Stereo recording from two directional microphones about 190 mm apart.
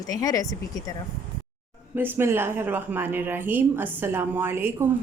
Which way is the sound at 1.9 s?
10° right (ahead or behind).